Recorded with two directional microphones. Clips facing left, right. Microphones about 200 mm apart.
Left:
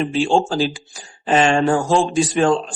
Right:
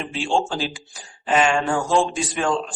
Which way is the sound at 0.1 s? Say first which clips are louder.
Left 5 dB; 40° left (ahead or behind).